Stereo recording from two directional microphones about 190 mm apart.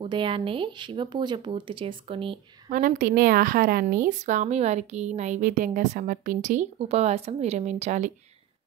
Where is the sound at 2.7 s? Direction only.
45° right (ahead or behind).